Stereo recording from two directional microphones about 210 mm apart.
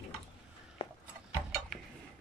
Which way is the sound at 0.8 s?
25° left (ahead or behind).